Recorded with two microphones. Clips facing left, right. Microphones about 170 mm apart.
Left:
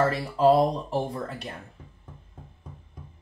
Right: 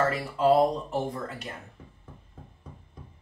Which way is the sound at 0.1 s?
35° left (ahead or behind).